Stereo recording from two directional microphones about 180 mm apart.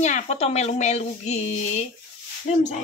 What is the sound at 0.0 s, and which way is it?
Speech, 40° left (ahead or behind).